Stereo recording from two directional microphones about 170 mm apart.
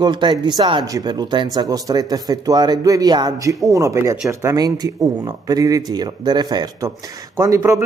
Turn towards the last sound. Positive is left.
turn(degrees=-20)  # may be behind; listen again after turning